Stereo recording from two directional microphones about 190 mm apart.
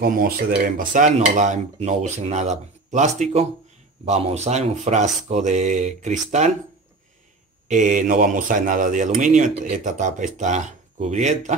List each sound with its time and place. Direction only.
0.0 s speech: 50° right (ahead or behind)
7.6 s speech: 40° right (ahead or behind)